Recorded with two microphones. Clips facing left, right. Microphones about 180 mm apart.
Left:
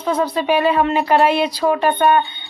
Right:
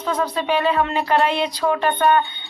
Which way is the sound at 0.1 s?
10° left (ahead or behind).